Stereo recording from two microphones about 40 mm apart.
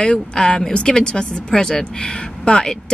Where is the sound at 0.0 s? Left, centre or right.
Centre.